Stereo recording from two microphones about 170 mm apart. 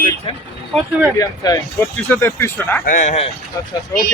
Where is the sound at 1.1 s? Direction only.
20° left (ahead or behind).